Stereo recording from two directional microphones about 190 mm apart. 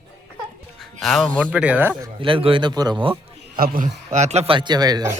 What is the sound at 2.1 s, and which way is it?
A man's voice, 25° right (ahead or behind).